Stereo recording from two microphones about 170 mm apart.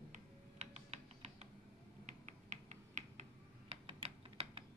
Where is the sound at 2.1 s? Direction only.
45° right (ahead or behind).